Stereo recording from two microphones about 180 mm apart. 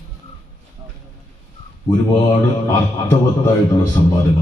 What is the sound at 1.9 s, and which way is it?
Speech, 25° left (ahead or behind).